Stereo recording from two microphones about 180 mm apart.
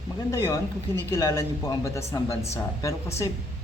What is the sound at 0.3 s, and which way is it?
A man's voice, 15° left (ahead or behind).